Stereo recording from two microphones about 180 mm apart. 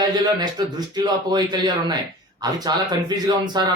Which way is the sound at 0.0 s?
20° right (ahead or behind).